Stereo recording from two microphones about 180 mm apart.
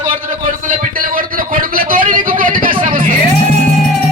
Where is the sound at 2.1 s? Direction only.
50° right (ahead or behind).